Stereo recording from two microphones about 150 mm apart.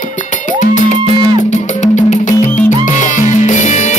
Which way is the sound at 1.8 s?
55° left (ahead or behind).